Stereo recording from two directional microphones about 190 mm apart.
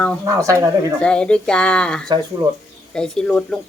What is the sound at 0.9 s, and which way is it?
Speech, 5° left (ahead or behind).